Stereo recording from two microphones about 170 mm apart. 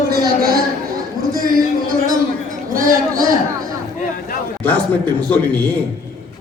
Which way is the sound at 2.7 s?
55° right (ahead or behind).